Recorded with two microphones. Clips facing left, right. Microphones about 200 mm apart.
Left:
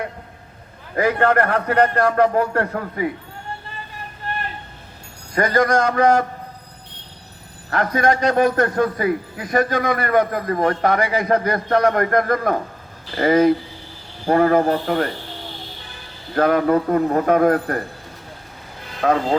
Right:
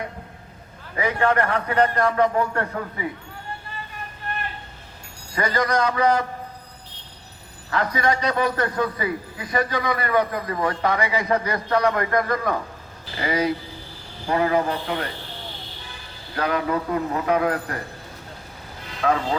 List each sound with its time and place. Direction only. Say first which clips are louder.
0.9 s a man's voice: left 4 dB; 50° left (ahead or behind)
5.3 s a man's voice: left 5 dB; 50° left (ahead or behind)
7.7 s a man's voice: left 4 dB; 50° left (ahead or behind)
16.3 s a man's voice: left 7 dB; 50° left (ahead or behind)
19.0 s speech: left 3 dB; 40° left (ahead or behind)